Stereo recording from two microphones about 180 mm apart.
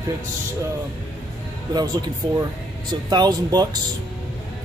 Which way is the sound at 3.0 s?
20° right (ahead or behind).